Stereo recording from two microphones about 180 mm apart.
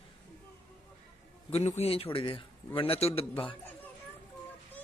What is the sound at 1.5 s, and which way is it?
A man's voice, 35° left (ahead or behind).